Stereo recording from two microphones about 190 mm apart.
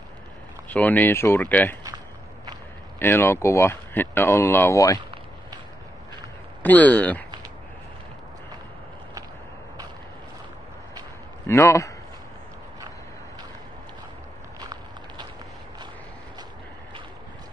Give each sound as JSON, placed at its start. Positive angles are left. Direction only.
{"t": 0.7, "sound": "speech", "side_deg": 10}
{"t": 3.0, "sound": "speech", "side_deg": 10}
{"t": 6.6, "sound": "speech", "side_deg": 10}
{"t": 11.4, "sound": "speech", "side_deg": 15}
{"t": 14.6, "sound": "walk", "side_deg": -20}